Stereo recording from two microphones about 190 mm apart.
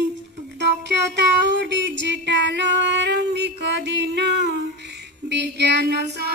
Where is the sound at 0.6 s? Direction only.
65° right (ahead or behind).